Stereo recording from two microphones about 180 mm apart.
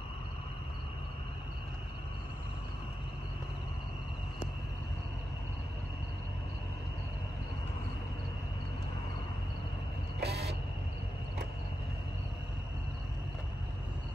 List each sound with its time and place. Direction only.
10.2 s vehicle: 65° right (ahead or behind)